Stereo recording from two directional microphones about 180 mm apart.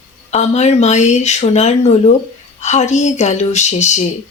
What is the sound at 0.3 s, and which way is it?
A woman's voice, 40° left (ahead or behind).